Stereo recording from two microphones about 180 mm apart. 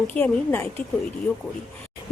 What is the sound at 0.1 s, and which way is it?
Speech, 10° left (ahead or behind).